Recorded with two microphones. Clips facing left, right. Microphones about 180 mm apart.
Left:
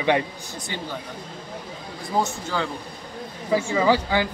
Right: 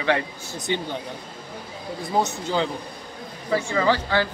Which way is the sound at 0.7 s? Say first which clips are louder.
Right 7 dB; 20° right (ahead or behind).